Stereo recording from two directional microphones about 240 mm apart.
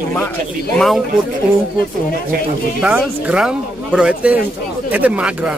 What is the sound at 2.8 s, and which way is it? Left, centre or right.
Speech, centre.